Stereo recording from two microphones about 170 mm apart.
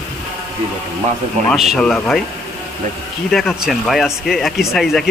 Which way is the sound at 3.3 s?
Centre (ahead or behind).